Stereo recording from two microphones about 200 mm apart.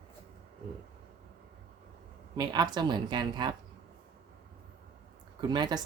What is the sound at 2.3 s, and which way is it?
Speech, 20° right (ahead or behind).